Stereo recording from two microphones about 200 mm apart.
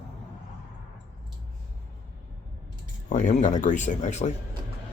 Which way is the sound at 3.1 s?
35° left (ahead or behind).